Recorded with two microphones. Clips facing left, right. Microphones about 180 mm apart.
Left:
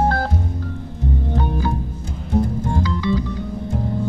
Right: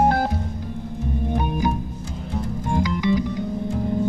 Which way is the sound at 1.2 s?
15° right (ahead or behind).